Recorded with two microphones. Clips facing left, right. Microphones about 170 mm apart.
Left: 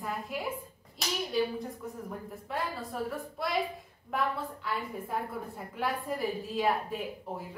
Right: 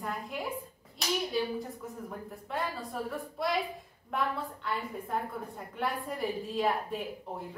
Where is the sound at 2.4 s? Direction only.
Centre (ahead or behind).